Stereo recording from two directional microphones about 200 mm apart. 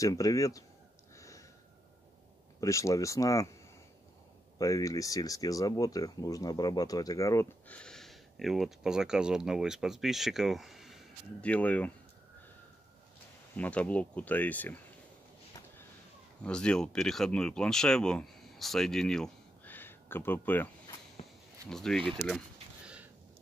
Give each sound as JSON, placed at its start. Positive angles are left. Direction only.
{"t": 0.0, "sound": "speech", "side_deg": 15}
{"t": 1.1, "sound": "a sound", "side_deg": 15}
{"t": 2.6, "sound": "speech", "side_deg": 15}
{"t": 4.6, "sound": "speech", "side_deg": 15}
{"t": 13.6, "sound": "speech", "side_deg": 5}
{"t": 16.4, "sound": "speech", "side_deg": 5}